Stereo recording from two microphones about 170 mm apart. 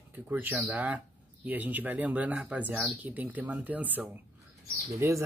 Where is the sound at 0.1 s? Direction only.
10° right (ahead or behind).